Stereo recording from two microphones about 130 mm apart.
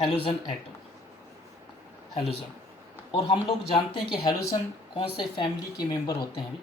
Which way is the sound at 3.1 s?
40° left (ahead or behind).